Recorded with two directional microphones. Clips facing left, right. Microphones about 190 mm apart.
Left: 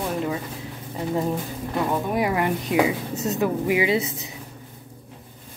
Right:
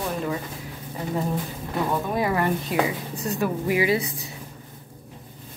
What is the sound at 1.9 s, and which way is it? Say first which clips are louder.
Speech: even; 15° left (ahead or behind).